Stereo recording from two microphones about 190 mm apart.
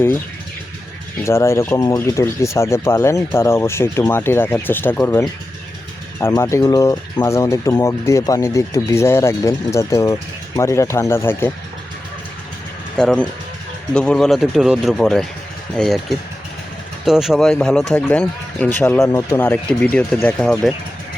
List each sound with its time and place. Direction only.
1.2 s speech: 15° left (ahead or behind)
13.0 s speech: 5° left (ahead or behind)